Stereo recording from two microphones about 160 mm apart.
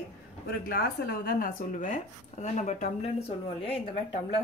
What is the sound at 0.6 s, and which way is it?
Speech, 70° left (ahead or behind).